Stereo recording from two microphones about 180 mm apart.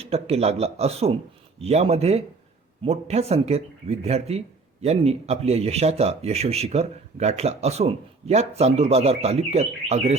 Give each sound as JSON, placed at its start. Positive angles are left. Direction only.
{"t": 0.0, "sound": "speech", "side_deg": -35}